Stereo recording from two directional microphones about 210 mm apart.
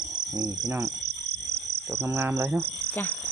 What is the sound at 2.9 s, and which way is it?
Frog, 10° left (ahead or behind).